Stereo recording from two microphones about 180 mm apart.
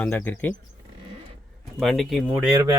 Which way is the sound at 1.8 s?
Centre (ahead or behind).